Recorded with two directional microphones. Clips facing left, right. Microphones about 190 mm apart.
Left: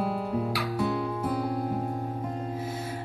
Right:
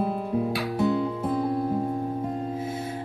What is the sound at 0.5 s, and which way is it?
Guitar, 25° right (ahead or behind).